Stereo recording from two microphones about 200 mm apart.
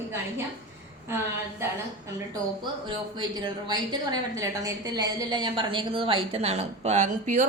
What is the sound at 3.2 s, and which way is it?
A woman's voice, 20° right (ahead or behind).